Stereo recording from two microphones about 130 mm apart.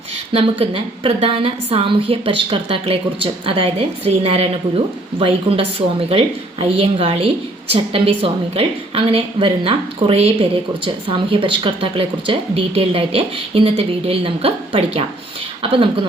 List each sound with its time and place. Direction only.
0.3 s a woman's voice: 45° right (ahead or behind)